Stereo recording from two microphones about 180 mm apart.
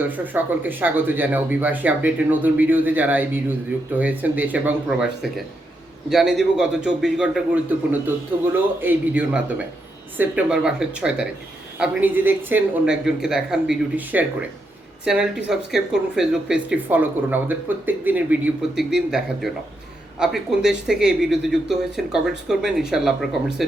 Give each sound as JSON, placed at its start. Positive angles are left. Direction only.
{"t": 0.0, "sound": "speech", "side_deg": -10}
{"t": 8.8, "sound": "speech", "side_deg": -10}